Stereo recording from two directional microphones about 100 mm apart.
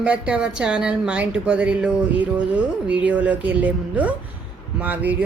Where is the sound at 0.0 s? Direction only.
15° right (ahead or behind).